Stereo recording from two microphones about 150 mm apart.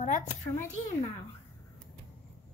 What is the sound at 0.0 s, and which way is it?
Speech, 55° left (ahead or behind).